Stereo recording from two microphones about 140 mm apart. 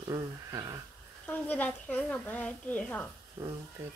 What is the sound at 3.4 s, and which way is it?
Speech, 20° right (ahead or behind).